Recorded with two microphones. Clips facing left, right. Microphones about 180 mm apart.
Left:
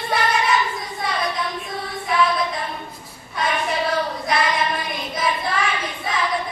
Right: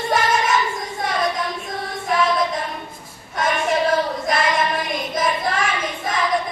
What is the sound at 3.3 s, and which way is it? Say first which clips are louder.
Child singing: right 3 dB; 45° right (ahead or behind).